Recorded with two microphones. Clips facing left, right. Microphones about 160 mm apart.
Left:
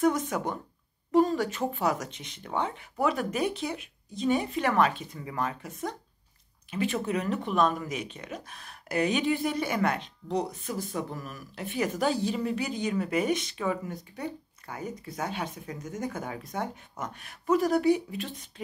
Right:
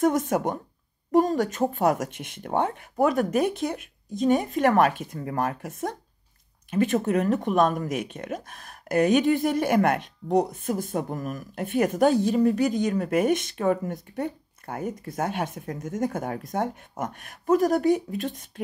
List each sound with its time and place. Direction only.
0.0 s speech: 50° right (ahead or behind)